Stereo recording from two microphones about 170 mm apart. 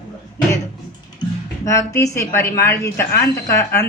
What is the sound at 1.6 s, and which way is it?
Speech, 20° left (ahead or behind).